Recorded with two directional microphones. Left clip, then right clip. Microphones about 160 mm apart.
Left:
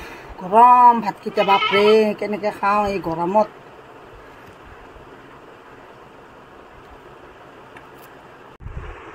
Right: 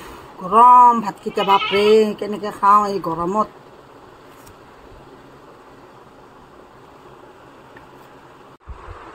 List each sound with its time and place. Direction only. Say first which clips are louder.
0.5 s speech: right 1 dB; 35° right (ahead or behind)